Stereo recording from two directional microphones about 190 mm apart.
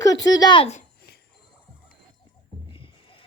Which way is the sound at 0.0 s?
20° left (ahead or behind).